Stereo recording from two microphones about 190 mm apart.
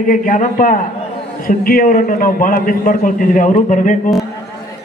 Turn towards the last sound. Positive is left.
turn(degrees=45)  # may be behind; listen again after turning